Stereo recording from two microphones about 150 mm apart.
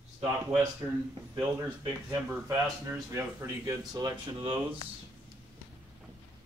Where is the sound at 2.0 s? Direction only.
15° right (ahead or behind).